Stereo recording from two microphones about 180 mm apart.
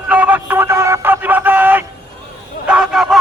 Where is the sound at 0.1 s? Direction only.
10° right (ahead or behind).